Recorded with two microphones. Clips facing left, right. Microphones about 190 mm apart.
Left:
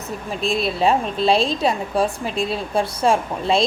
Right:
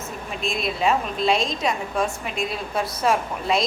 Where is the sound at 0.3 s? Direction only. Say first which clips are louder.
Left 5 dB; 30° left (ahead or behind).